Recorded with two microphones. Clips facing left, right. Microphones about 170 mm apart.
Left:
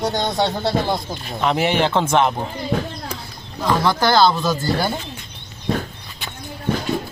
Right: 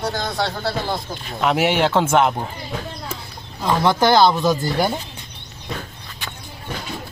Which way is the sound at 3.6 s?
20° right (ahead or behind).